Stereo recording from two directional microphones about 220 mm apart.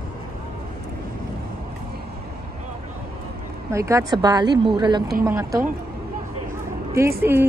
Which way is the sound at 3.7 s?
15° right (ahead or behind).